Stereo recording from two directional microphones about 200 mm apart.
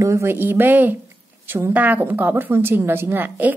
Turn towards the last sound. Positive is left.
turn(degrees=-10)  # may be behind; listen again after turning